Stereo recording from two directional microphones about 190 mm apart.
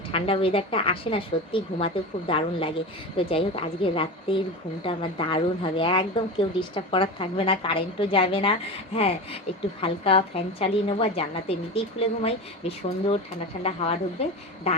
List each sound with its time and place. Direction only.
0.1 s a woman's voice: 30° left (ahead or behind)